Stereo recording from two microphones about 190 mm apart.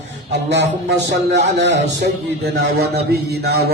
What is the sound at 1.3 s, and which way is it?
A man's voice, 65° right (ahead or behind).